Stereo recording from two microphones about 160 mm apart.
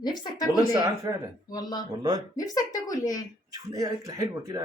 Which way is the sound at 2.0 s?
25° right (ahead or behind).